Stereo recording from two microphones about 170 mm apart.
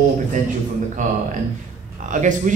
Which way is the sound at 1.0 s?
45° right (ahead or behind).